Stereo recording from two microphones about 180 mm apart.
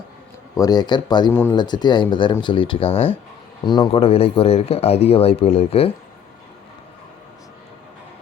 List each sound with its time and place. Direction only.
0.5 s speech: 20° left (ahead or behind)
1.3 s speech: 10° left (ahead or behind)
1.5 s speech: 25° left (ahead or behind)